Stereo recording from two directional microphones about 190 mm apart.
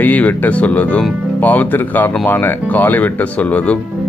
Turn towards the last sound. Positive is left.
turn(degrees=5)  # may be behind; listen again after turning